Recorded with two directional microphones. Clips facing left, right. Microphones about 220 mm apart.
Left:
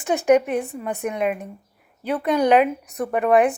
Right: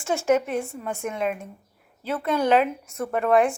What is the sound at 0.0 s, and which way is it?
A woman's voice, 20° left (ahead or behind).